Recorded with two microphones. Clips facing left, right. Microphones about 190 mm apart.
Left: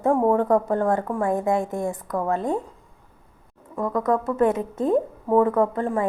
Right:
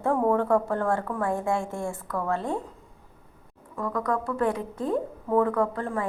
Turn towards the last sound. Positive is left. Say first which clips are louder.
# left 5 dB
turn(degrees=20)  # may be behind; listen again after turning